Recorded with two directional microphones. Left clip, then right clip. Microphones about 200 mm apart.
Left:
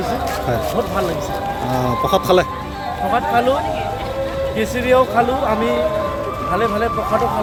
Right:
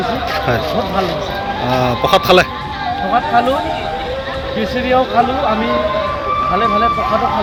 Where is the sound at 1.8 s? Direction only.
10° left (ahead or behind).